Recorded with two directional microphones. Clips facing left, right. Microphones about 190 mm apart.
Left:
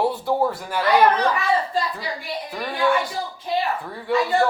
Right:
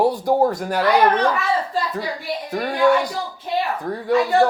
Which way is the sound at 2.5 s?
45° right (ahead or behind).